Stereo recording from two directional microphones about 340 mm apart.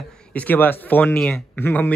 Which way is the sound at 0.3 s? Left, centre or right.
Centre.